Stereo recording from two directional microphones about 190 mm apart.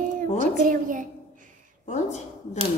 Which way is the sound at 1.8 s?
35° left (ahead or behind).